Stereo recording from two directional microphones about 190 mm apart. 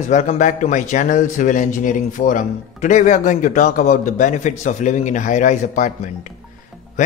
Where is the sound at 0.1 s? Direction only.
40° left (ahead or behind).